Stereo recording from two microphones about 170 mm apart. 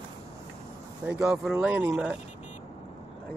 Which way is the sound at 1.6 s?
10° right (ahead or behind).